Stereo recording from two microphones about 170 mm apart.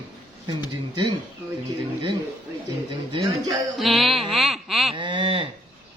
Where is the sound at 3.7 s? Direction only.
Centre (ahead or behind).